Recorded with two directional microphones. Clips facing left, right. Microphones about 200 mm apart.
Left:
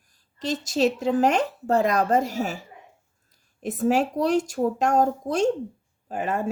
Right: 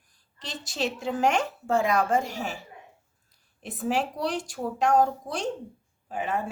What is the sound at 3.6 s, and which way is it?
A woman's voice, 45° left (ahead or behind).